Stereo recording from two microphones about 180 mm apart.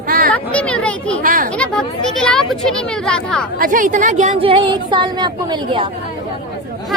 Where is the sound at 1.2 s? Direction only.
50° right (ahead or behind).